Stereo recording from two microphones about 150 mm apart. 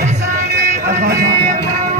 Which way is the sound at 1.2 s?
60° right (ahead or behind).